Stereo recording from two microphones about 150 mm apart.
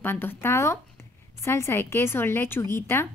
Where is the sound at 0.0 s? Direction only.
15° left (ahead or behind).